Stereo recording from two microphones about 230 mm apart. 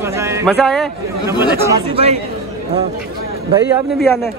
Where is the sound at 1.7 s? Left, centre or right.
Right.